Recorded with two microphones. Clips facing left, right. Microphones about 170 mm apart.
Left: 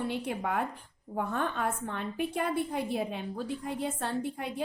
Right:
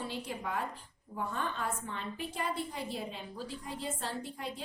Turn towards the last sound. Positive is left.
turn(degrees=55)  # may be behind; listen again after turning